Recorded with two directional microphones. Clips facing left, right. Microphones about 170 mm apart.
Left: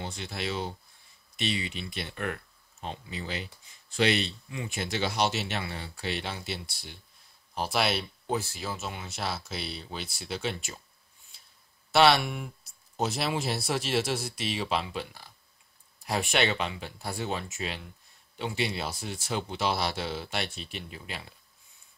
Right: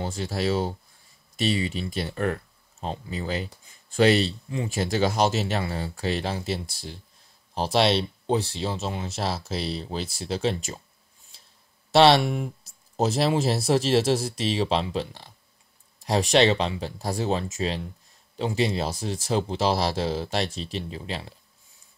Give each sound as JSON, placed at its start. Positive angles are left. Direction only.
{"t": 0.0, "sound": "speech", "side_deg": -40}
{"t": 11.9, "sound": "speech", "side_deg": -35}